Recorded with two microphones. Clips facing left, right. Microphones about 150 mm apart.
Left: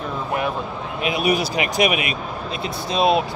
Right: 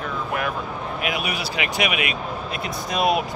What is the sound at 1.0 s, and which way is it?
A man's voice, 35° left (ahead or behind).